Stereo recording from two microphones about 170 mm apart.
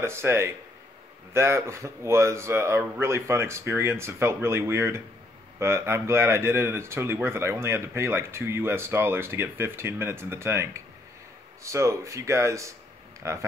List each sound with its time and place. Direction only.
0.0 s speech: 15° right (ahead or behind)